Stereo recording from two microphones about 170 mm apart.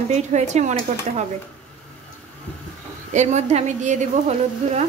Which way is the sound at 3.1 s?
45° right (ahead or behind).